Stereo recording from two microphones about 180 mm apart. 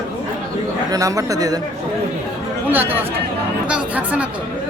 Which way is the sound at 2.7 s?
10° right (ahead or behind).